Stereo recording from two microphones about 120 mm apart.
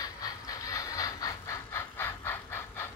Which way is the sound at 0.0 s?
30° left (ahead or behind).